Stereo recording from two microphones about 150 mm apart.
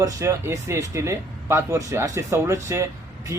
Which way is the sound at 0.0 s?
20° right (ahead or behind).